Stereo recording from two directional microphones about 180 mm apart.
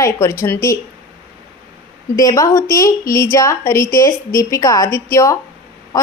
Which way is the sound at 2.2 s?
20° left (ahead or behind).